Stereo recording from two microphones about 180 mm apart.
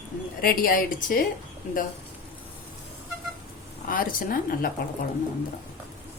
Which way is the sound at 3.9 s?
50° left (ahead or behind).